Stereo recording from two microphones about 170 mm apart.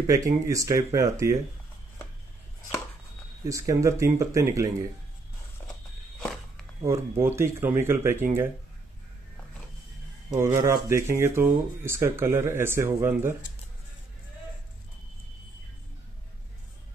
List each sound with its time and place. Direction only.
0.0 s speech: 20° right (ahead or behind)
3.4 s speech: 20° right (ahead or behind)
5.6 s walk: 15° left (ahead or behind)
6.8 s speech: 15° right (ahead or behind)
10.3 s speech: 20° right (ahead or behind)